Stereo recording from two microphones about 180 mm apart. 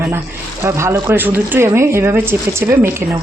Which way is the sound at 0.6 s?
15° right (ahead or behind).